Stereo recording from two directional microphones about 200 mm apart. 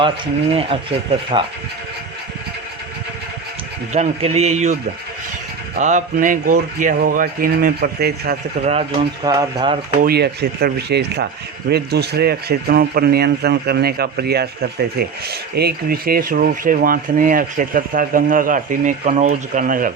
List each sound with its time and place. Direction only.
0.5 s speech: 25° right (ahead or behind)
3.9 s a man's voice: 35° right (ahead or behind); by 8.4 s 50° right (ahead or behind)
8.6 s a man's voice: 30° right (ahead or behind)
9.3 s speech: 20° right (ahead or behind)
10.0 s a man's voice: 50° right (ahead or behind)